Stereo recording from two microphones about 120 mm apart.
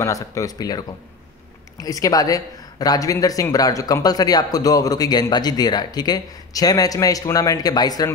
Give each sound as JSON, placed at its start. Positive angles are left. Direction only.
{"t": 0.0, "sound": "speech", "side_deg": 25}